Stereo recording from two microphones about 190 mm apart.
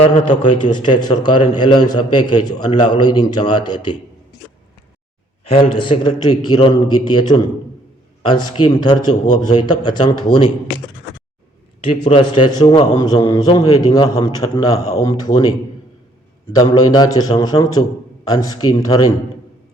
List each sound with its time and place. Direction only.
0.3 s a man's voice: 25° left (ahead or behind)
5.5 s a man's voice: 25° left (ahead or behind)
11.8 s a man's voice: 30° left (ahead or behind)